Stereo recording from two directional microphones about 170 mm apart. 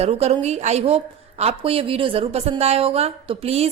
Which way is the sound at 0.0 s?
35° right (ahead or behind).